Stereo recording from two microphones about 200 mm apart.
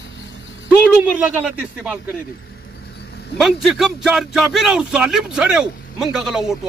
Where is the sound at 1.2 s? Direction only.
5° right (ahead or behind).